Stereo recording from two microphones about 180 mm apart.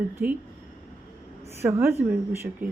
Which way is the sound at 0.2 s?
5° right (ahead or behind).